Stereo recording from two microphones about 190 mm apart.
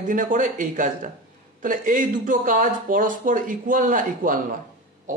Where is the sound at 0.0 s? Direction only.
45° right (ahead or behind).